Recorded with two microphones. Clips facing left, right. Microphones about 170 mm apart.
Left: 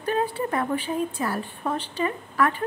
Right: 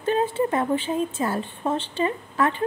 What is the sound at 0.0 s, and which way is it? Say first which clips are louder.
A woman's voice: right 3 dB; 25° right (ahead or behind).